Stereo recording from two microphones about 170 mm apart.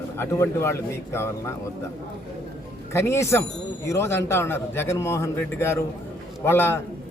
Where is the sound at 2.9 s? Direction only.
15° left (ahead or behind).